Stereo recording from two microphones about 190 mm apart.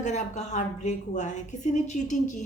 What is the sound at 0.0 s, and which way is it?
A woman's voice, 40° left (ahead or behind).